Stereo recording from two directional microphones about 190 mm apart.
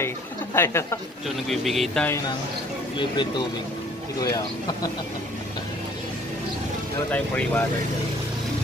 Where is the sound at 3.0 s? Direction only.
25° left (ahead or behind).